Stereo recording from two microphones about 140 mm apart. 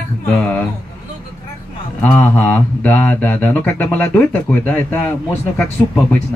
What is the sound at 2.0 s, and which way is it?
Speech, 10° left (ahead or behind).